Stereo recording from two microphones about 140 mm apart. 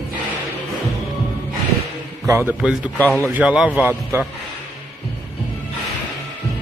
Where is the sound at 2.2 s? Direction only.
20° right (ahead or behind).